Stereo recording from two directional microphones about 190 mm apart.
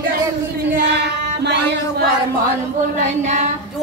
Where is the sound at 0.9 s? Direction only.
60° right (ahead or behind).